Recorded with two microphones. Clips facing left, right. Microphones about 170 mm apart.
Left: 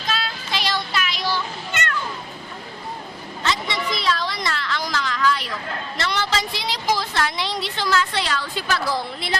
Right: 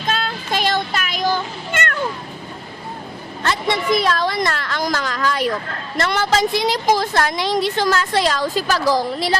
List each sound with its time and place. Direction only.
0.1 s meow: 45° right (ahead or behind)
3.4 s a sound: 55° right (ahead or behind)
6.0 s a woman's voice: 50° right (ahead or behind)